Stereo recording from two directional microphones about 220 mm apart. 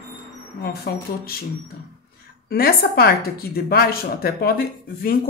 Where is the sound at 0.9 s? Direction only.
45° left (ahead or behind).